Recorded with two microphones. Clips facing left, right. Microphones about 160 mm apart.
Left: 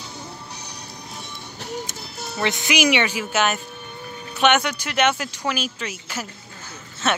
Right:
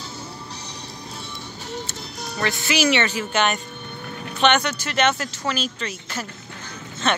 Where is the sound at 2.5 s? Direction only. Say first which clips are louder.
Even; 20° left (ahead or behind).